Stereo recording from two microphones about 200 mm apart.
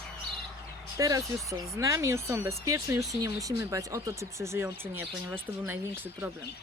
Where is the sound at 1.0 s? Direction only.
15° right (ahead or behind).